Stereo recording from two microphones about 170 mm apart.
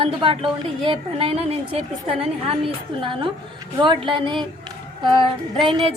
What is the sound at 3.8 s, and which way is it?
Speech, 30° right (ahead or behind).